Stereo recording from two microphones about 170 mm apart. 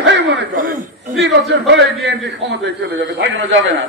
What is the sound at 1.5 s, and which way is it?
Speech, 90° right.